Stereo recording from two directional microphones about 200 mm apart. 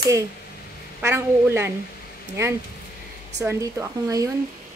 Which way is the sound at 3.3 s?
15° right (ahead or behind).